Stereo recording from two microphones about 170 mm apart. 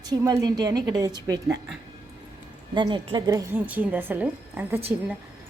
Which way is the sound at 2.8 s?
30° right (ahead or behind).